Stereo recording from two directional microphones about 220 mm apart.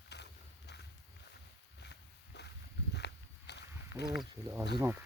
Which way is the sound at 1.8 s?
50° left (ahead or behind).